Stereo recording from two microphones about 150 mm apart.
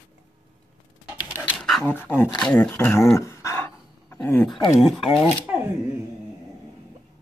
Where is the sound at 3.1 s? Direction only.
20° left (ahead or behind).